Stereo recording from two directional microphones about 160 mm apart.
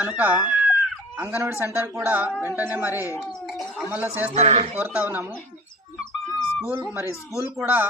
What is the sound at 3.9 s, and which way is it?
Speech, 10° right (ahead or behind).